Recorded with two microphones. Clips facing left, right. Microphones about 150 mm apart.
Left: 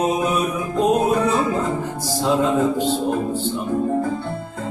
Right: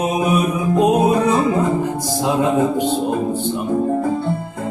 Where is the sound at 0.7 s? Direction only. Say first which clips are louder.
Right 3 dB; 15° right (ahead or behind).